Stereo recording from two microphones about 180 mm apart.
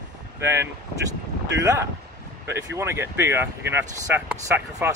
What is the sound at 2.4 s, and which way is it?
Speech, 15° right (ahead or behind).